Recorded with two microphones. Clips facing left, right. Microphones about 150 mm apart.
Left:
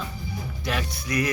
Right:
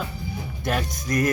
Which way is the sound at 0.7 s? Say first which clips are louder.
Right 3 dB; 45° right (ahead or behind).